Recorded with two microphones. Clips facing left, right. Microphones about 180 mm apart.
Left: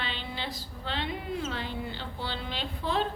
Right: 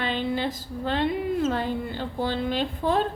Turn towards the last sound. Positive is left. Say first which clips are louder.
# right 7 dB
turn(degrees=-45)  # may be behind; listen again after turning